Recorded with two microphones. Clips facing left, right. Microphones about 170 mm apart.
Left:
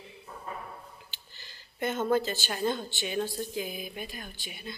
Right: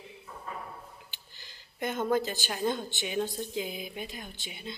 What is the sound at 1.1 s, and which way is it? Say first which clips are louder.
Speech: left 1 dB; 15° right (ahead or behind).